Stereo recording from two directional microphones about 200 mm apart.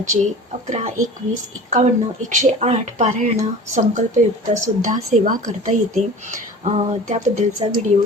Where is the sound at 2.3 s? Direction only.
35° right (ahead or behind).